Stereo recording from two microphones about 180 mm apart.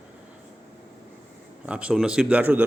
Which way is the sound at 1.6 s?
5° right (ahead or behind).